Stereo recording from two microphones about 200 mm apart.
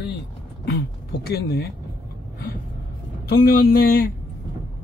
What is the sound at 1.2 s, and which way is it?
Speech, 50° left (ahead or behind).